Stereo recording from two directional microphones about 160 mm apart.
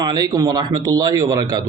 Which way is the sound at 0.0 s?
25° right (ahead or behind).